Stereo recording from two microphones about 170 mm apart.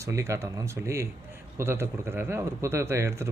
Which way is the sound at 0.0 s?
20° right (ahead or behind).